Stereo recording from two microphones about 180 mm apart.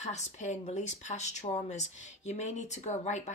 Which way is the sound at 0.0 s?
40° left (ahead or behind).